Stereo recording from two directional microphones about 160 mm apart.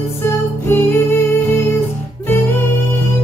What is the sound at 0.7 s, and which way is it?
Music, 15° left (ahead or behind).